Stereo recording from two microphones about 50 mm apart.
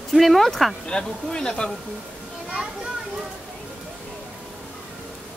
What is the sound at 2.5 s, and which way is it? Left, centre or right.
Children playing, centre.